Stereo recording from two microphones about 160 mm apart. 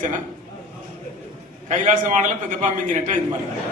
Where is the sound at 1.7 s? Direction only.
50° right (ahead or behind).